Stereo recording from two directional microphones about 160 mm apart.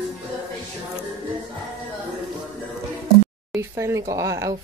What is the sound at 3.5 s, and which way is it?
Speech, 15° right (ahead or behind).